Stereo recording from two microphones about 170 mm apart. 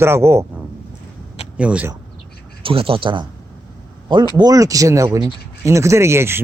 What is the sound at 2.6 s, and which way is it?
Speech, 30° right (ahead or behind).